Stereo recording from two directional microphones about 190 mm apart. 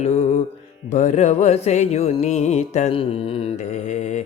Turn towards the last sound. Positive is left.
turn(degrees=40)  # may be behind; listen again after turning